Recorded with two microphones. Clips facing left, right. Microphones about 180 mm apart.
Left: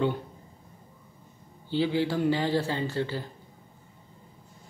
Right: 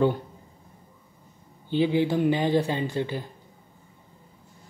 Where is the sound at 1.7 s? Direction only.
20° right (ahead or behind).